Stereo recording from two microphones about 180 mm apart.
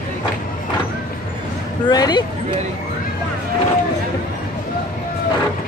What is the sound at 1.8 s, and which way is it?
Speech, 25° left (ahead or behind).